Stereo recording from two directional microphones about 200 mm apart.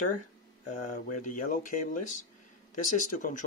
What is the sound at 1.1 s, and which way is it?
Speech, 40° left (ahead or behind).